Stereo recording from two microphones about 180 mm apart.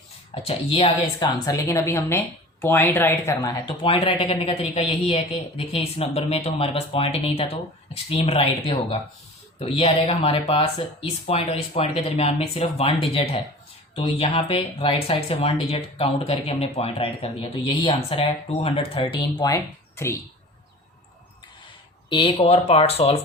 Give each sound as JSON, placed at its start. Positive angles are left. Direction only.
{"t": 0.4, "sound": "speech", "side_deg": 35}
{"t": 1.5, "sound": "speech", "side_deg": 20}
{"t": 22.1, "sound": "speech", "side_deg": 30}